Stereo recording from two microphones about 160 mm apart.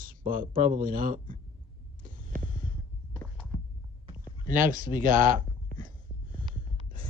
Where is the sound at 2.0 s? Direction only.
60° right (ahead or behind).